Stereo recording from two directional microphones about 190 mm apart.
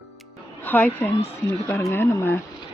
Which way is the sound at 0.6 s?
10° left (ahead or behind).